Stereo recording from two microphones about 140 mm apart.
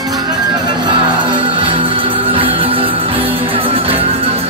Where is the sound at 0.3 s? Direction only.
35° right (ahead or behind).